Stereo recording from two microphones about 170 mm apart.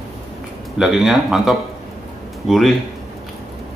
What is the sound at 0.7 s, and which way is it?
A man's voice, 5° right (ahead or behind).